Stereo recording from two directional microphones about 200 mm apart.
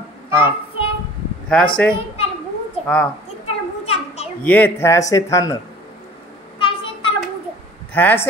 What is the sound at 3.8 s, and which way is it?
Children playing, 30° left (ahead or behind).